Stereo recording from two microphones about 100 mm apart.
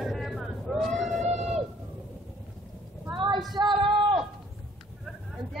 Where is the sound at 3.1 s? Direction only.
50° right (ahead or behind).